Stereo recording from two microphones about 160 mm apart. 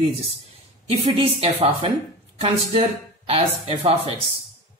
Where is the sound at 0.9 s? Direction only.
35° right (ahead or behind).